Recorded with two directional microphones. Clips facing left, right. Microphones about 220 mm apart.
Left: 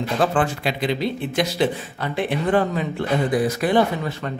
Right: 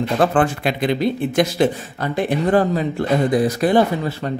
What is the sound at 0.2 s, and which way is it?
Speech, 55° right (ahead or behind).